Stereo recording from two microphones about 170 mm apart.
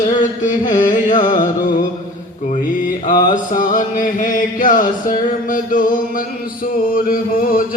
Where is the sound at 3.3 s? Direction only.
50° left (ahead or behind).